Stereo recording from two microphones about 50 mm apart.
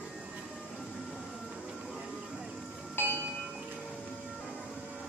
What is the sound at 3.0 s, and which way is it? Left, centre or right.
Train, left.